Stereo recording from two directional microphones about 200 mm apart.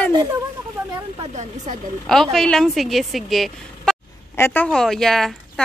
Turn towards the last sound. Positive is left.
turn(degrees=0)  # may be behind; listen again after turning